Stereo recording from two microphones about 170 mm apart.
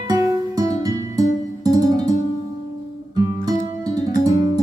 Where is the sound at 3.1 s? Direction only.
25° right (ahead or behind).